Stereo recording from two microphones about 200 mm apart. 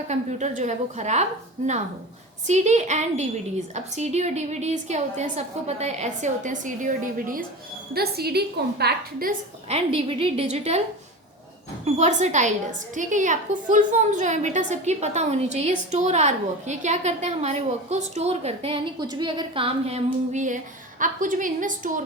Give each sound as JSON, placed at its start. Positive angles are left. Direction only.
{"t": 0.1, "sound": "a woman's voice", "side_deg": -35}
{"t": 2.5, "sound": "a woman's voice", "side_deg": -35}
{"t": 9.6, "sound": "a woman's voice", "side_deg": -30}
{"t": 11.9, "sound": "a woman's voice", "side_deg": -35}